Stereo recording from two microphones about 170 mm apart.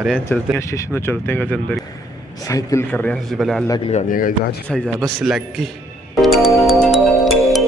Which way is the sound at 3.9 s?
55° left (ahead or behind).